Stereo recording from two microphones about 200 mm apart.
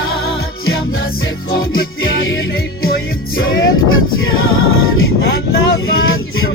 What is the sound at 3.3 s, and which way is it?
Music, 90° left.